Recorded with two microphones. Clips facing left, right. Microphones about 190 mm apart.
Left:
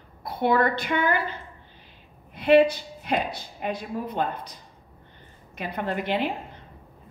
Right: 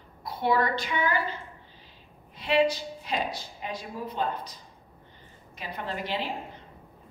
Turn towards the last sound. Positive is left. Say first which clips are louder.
# left 6 dB
turn(degrees=55)  # may be behind; listen again after turning